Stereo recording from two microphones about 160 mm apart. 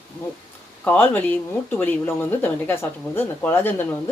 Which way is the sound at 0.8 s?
10° left (ahead or behind).